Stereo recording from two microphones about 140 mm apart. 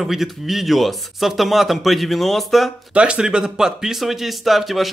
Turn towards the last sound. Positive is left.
turn(degrees=0)  # may be behind; listen again after turning